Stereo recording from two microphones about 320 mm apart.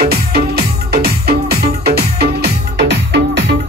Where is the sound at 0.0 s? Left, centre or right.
Right.